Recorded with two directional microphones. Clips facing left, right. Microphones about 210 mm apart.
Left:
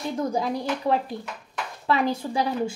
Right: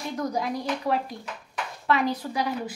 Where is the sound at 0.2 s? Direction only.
30° left (ahead or behind).